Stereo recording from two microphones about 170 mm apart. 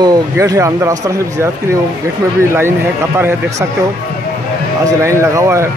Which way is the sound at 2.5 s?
15° right (ahead or behind).